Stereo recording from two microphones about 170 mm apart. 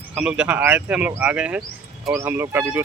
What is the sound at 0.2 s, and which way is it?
Speech, 5° right (ahead or behind).